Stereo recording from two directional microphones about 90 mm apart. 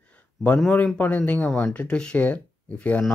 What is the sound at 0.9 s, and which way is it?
Speech, 20° left (ahead or behind).